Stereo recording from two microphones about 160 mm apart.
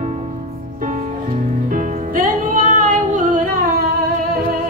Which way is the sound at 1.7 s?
55° right (ahead or behind).